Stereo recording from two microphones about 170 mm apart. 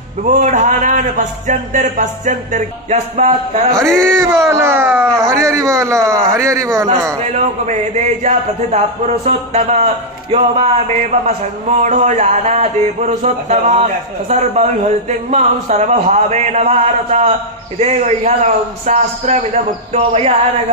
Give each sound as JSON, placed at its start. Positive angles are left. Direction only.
{"t": 0.2, "sound": "a man's voice", "side_deg": -45}
{"t": 4.2, "sound": "speech", "side_deg": -15}
{"t": 7.3, "sound": "a man's voice", "side_deg": -45}